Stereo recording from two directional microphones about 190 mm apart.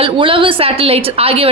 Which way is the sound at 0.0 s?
25° right (ahead or behind).